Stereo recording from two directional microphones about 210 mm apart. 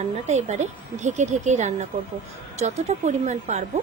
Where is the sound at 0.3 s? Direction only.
35° right (ahead or behind).